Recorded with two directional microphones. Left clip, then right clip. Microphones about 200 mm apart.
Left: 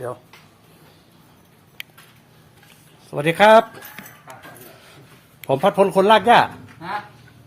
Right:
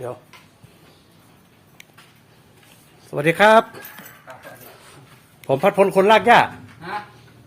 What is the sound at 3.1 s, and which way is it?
Speech, 5° right (ahead or behind).